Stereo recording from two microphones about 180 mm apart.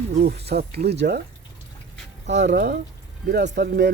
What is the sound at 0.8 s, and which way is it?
Speech, 65° right (ahead or behind).